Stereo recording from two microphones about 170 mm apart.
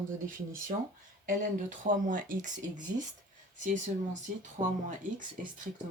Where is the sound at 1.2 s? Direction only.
50° right (ahead or behind).